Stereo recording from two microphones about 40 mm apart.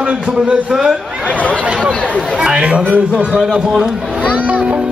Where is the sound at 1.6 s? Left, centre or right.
Right.